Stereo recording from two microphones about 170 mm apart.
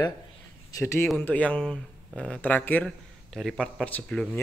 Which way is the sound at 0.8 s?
15° left (ahead or behind).